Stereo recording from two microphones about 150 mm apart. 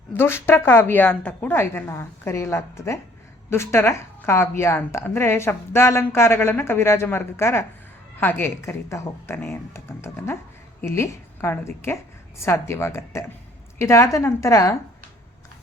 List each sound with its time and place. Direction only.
0.2 s a woman's voice: 15° left (ahead or behind)